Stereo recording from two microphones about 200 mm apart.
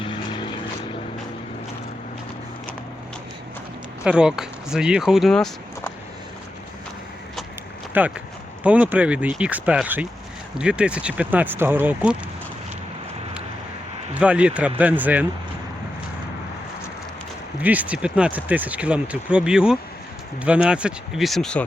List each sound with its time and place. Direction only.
0.0 s vehicle: 25° left (ahead or behind)
4.0 s speech: 5° right (ahead or behind)
7.9 s speech: 5° right (ahead or behind)
14.1 s a man's voice: 5° right (ahead or behind)
17.6 s speech: 10° right (ahead or behind)